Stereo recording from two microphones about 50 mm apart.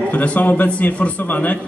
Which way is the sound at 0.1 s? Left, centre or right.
Left.